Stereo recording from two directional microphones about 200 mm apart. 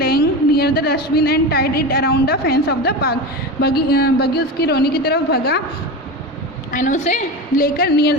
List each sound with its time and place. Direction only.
0.0 s a woman's voice: 50° left (ahead or behind)
6.7 s a woman's voice: 40° left (ahead or behind)
7.6 s a woman's voice: 50° left (ahead or behind)